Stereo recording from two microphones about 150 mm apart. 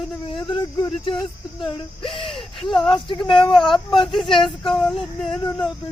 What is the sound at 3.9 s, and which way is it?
Speech, 35° left (ahead or behind).